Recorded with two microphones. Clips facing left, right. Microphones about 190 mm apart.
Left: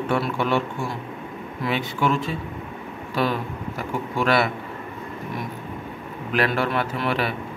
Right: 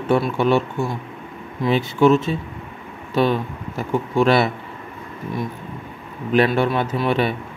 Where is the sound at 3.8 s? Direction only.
25° right (ahead or behind).